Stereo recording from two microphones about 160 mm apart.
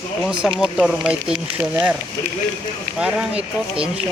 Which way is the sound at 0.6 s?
5° right (ahead or behind).